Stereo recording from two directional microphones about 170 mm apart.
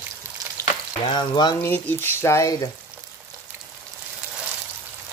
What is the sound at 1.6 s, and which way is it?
Speech, 10° left (ahead or behind).